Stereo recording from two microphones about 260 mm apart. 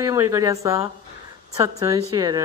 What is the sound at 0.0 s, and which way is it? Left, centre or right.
Speech, centre.